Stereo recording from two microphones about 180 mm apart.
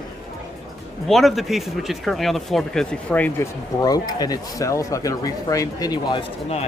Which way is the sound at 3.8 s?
20° left (ahead or behind).